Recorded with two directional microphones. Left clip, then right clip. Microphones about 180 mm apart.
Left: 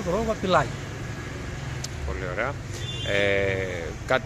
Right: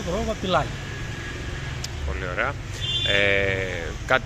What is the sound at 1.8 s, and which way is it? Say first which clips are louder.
Vehicle: left 1 dB; 5° left (ahead or behind).